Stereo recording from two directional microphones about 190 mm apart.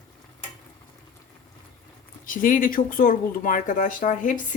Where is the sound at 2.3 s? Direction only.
45° left (ahead or behind).